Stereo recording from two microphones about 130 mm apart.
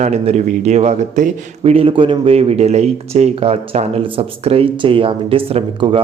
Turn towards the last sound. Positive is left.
turn(degrees=-45)  # may be behind; listen again after turning